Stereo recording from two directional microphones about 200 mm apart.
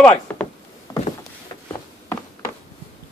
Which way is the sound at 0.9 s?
20° left (ahead or behind).